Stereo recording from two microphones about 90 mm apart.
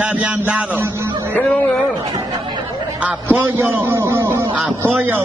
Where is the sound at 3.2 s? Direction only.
25° right (ahead or behind).